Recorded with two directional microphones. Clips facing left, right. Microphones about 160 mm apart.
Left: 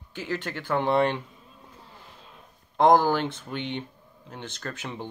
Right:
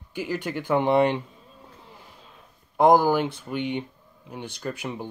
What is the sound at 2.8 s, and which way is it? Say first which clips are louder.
Speech: right 2 dB; 10° right (ahead or behind).